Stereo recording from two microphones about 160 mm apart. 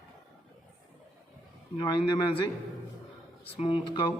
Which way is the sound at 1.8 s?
25° left (ahead or behind).